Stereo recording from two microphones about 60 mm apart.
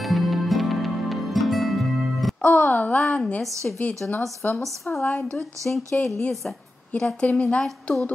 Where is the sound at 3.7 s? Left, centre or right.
Centre.